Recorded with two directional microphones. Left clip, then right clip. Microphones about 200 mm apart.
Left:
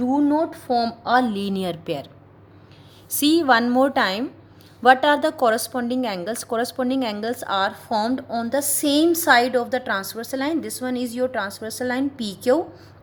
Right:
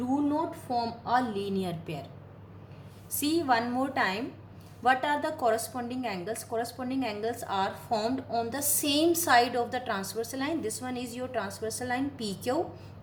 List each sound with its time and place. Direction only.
0.1 s a woman's voice: 50° left (ahead or behind)
3.1 s a woman's voice: 50° left (ahead or behind)